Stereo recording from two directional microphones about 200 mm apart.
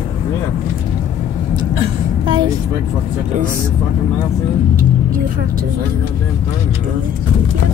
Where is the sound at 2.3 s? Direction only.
20° right (ahead or behind).